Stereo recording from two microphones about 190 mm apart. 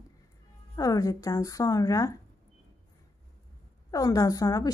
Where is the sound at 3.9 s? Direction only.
20° left (ahead or behind).